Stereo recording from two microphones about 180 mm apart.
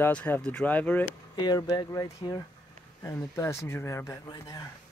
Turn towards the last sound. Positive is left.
turn(degrees=15)  # may be behind; listen again after turning